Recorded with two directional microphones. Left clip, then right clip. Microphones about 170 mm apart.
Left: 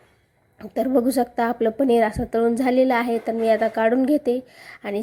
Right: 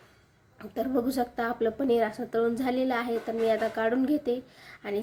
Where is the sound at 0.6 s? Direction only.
35° left (ahead or behind).